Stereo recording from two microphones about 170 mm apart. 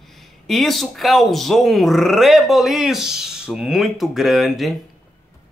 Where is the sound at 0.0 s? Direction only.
Centre (ahead or behind).